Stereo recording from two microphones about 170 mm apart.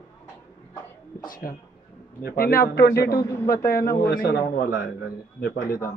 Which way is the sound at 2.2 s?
60° left (ahead or behind).